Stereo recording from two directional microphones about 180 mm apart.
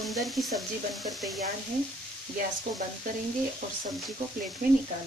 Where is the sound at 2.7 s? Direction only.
60° right (ahead or behind).